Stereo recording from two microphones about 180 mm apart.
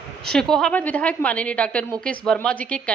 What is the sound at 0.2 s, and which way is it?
A woman's voice, 5° left (ahead or behind).